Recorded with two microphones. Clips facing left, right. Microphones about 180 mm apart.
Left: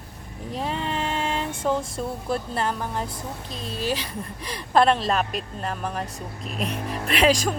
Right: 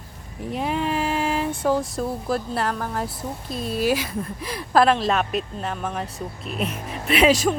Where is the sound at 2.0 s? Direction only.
Centre (ahead or behind).